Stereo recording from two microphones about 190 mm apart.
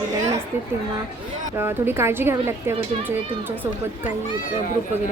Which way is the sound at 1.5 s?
10° right (ahead or behind).